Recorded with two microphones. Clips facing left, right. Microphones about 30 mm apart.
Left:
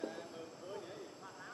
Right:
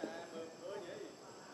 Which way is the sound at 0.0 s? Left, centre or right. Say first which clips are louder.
Even; centre.